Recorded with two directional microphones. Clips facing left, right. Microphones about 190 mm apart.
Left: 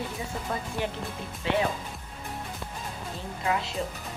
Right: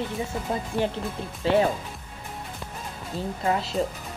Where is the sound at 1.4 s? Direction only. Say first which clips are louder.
Right 6 dB; 35° right (ahead or behind).